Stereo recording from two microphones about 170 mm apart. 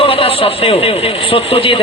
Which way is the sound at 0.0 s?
35° left (ahead or behind).